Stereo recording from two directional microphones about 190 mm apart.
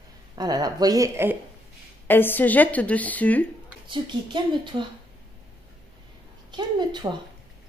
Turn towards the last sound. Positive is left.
turn(degrees=-25)  # may be behind; listen again after turning